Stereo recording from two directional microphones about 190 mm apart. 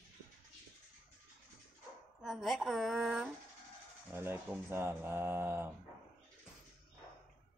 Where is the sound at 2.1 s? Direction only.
Centre (ahead or behind).